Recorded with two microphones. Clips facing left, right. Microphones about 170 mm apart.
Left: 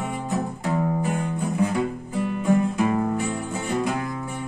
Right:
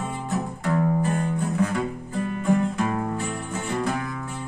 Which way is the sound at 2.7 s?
15° left (ahead or behind).